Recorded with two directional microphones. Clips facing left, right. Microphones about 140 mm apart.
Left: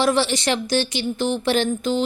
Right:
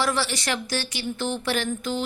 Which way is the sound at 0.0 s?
20° left (ahead or behind).